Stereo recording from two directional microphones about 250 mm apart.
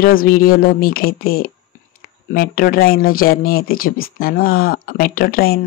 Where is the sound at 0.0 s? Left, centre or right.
Left.